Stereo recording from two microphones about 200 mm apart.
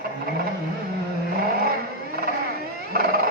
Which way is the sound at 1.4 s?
50° right (ahead or behind).